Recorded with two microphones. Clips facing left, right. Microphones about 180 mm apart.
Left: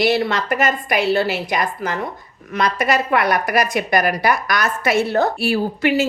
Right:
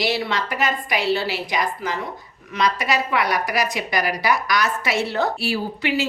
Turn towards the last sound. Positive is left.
turn(degrees=50)  # may be behind; listen again after turning